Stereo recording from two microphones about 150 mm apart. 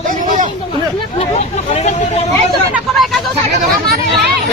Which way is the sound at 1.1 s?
45° left (ahead or behind).